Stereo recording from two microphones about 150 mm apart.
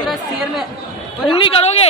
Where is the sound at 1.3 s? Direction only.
40° left (ahead or behind).